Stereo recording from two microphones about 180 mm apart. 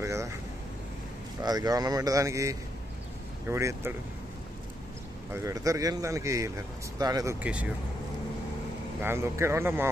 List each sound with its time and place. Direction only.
0.0 s vehicle: 15° right (ahead or behind)
1.4 s a man's voice: 20° right (ahead or behind)
5.3 s a man's voice: 15° right (ahead or behind)
9.0 s a man's voice: 15° right (ahead or behind)